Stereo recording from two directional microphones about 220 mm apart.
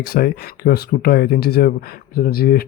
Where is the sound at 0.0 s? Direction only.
45° left (ahead or behind).